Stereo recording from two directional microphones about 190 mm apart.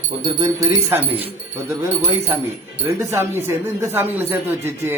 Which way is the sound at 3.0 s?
15° right (ahead or behind).